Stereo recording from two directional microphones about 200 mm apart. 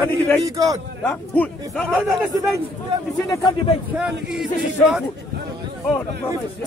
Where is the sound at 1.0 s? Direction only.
10° left (ahead or behind).